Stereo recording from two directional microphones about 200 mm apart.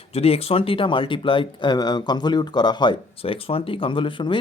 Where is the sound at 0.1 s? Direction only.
30° left (ahead or behind).